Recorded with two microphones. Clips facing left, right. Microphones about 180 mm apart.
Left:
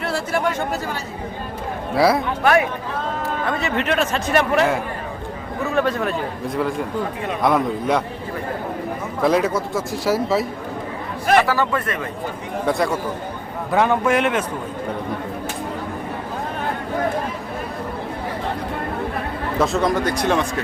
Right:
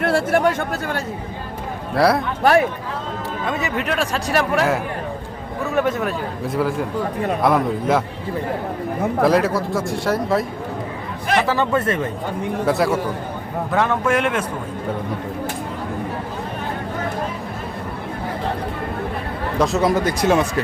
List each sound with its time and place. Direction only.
0.0 s speech: 55° right (ahead or behind)
2.0 s speech: centre (ahead or behind)
2.4 s speech: 35° right (ahead or behind)
3.8 s speech: centre (ahead or behind)
9.2 s speech: centre (ahead or behind)
11.4 s speech: 25° right (ahead or behind)
12.6 s speech: 5° right (ahead or behind)
19.5 s speech: centre (ahead or behind)